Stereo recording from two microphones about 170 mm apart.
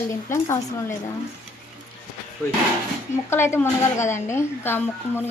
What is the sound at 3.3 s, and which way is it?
A woman's voice, 15° left (ahead or behind).